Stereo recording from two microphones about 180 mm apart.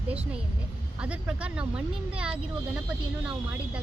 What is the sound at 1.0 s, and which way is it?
Speech, 5° right (ahead or behind).